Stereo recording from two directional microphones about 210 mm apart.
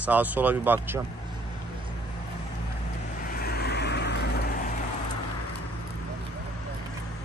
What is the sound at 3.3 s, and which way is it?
Vehicle, 45° left (ahead or behind).